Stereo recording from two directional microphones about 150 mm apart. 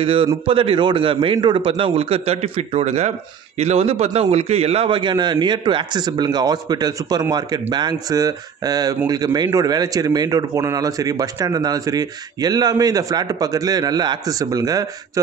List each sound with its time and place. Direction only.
0.0 s a man's voice: 35° right (ahead or behind)